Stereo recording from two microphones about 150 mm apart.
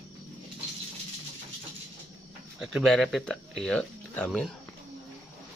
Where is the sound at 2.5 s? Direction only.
Centre (ahead or behind).